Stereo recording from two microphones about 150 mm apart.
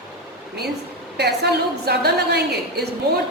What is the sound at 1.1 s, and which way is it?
A woman's voice, 90° right.